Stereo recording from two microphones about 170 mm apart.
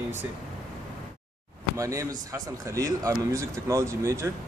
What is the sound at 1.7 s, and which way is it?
Speech, 20° right (ahead or behind).